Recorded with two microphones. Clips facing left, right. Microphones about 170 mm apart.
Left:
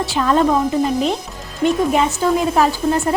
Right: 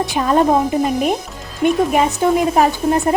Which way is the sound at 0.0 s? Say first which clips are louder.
Right 1 dB; 15° right (ahead or behind).